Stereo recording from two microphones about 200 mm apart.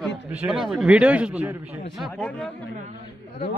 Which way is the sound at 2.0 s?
5° left (ahead or behind).